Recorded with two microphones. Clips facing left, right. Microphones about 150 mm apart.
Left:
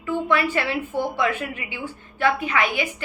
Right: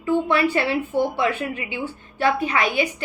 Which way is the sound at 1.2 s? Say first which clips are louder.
Right 1 dB; 30° right (ahead or behind).